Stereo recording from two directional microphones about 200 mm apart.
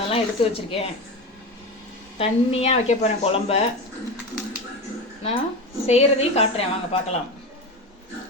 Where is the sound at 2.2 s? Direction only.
30° left (ahead or behind).